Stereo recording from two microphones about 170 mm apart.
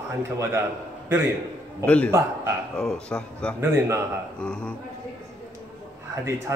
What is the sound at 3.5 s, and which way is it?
Speech, 15° right (ahead or behind).